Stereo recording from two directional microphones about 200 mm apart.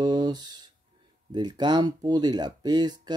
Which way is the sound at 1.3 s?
20° right (ahead or behind).